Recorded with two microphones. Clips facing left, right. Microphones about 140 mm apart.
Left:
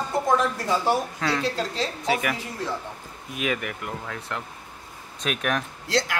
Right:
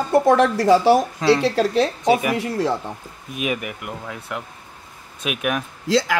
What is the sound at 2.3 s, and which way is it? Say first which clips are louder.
Speech: right 10 dB; 70° right (ahead or behind).